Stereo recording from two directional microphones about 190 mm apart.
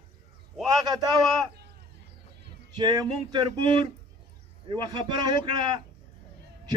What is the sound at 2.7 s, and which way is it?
A man's voice, 20° right (ahead or behind).